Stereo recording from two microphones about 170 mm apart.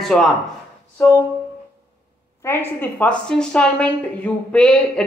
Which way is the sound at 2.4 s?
10° left (ahead or behind).